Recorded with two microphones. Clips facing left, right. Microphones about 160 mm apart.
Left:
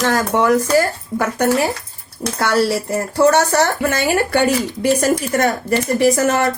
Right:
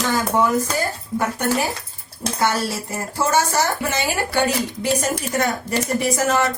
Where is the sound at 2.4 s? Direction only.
65° left (ahead or behind).